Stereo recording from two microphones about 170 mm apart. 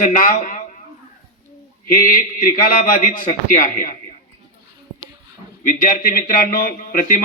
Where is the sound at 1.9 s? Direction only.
55° left (ahead or behind).